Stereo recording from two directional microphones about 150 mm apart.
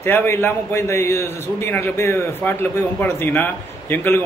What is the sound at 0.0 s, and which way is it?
A man's voice, 15° left (ahead or behind).